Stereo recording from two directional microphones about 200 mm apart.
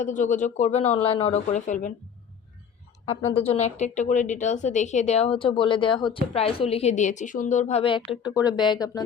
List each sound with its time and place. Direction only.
0.0 s a woman's voice: 40° left (ahead or behind)
3.1 s a woman's voice: 30° left (ahead or behind)